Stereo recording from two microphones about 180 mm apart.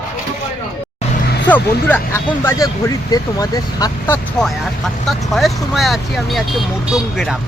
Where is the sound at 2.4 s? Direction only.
20° left (ahead or behind).